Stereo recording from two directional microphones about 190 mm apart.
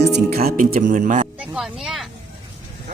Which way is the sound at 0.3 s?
50° right (ahead or behind).